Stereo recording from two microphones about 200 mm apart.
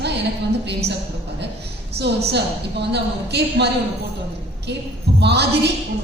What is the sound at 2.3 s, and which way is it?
A woman's voice, 55° right (ahead or behind).